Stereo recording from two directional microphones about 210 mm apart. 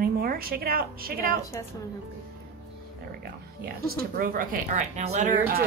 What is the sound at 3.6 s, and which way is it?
Speech, 45° right (ahead or behind).